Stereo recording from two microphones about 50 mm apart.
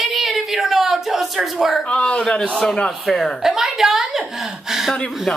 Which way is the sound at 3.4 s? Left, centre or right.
Centre.